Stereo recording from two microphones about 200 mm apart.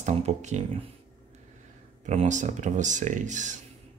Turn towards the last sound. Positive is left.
turn(degrees=-35)  # may be behind; listen again after turning